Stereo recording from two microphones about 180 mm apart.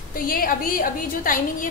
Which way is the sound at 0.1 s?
50° left (ahead or behind).